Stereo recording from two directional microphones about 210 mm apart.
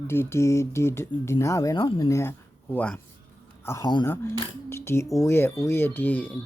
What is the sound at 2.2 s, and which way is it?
Speech, 10° left (ahead or behind).